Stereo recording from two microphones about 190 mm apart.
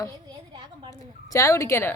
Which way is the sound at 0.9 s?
15° left (ahead or behind).